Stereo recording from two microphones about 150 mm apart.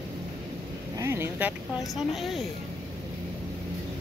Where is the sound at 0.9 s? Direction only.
20° right (ahead or behind).